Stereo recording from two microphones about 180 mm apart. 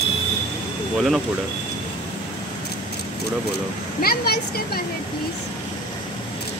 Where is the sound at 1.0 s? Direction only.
5° right (ahead or behind).